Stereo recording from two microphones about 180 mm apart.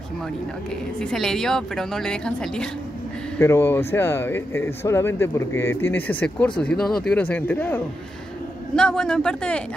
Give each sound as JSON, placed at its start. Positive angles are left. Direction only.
{"t": 0.9, "sound": "a woman's voice", "side_deg": 5}
{"t": 3.3, "sound": "a woman's voice", "side_deg": 15}